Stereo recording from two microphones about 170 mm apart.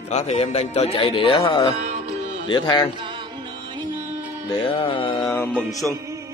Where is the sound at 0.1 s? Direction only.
40° left (ahead or behind).